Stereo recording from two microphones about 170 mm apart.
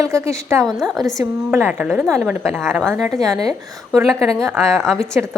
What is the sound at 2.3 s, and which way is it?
Speech, 10° right (ahead or behind).